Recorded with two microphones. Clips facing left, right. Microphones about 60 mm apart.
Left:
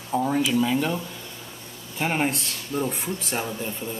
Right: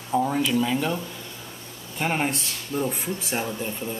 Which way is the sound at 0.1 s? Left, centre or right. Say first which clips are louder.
Even; centre.